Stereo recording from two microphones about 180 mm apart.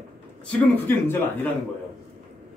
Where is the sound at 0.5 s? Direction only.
10° left (ahead or behind).